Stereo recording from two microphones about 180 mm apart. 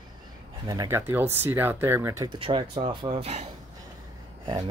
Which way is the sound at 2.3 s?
30° right (ahead or behind).